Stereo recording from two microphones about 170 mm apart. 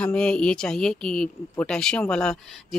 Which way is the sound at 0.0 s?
5° left (ahead or behind).